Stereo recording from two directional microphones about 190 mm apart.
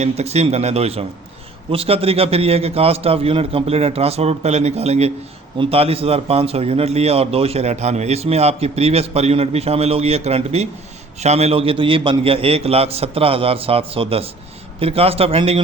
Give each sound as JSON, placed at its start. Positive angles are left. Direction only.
{"t": 0.0, "sound": "a man's voice", "side_deg": -35}